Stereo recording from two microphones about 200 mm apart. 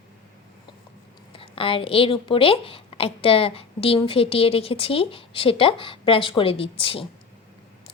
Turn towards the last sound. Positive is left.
turn(degrees=25)  # may be behind; listen again after turning